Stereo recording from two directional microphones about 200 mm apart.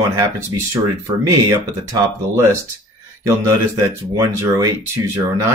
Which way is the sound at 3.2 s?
15° right (ahead or behind).